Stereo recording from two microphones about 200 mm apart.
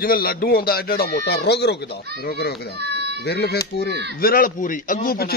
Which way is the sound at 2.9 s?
55° right (ahead or behind).